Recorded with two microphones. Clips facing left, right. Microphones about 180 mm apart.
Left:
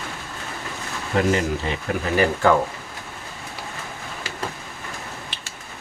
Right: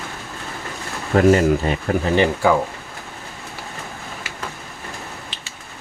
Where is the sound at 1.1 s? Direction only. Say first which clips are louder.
Right 7 dB; 45° right (ahead or behind).